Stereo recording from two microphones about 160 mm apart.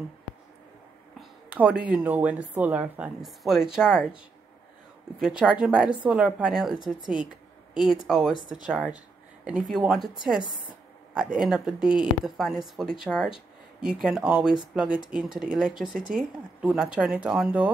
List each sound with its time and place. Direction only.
1.5 s speech: 10° right (ahead or behind)
5.2 s speech: 5° right (ahead or behind)
8.4 s speech: 25° left (ahead or behind)
8.6 s speech: 5° right (ahead or behind)
11.3 s speech: 5° right (ahead or behind)